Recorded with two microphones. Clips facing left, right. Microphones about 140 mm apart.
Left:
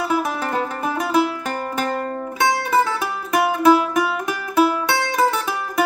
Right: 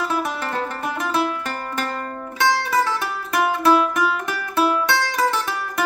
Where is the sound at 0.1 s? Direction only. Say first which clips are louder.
Left 3 dB; 10° left (ahead or behind).